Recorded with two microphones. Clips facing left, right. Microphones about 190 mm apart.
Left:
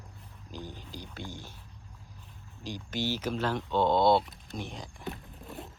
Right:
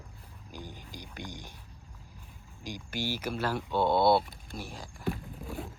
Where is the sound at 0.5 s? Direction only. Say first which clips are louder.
Left 2 dB; 10° right (ahead or behind).